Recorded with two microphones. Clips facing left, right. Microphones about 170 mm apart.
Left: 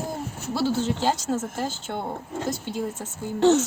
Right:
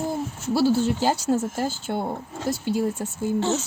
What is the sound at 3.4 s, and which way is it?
Speech, 65° left (ahead or behind).